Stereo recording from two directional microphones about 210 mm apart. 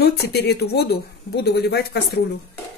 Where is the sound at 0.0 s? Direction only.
50° left (ahead or behind).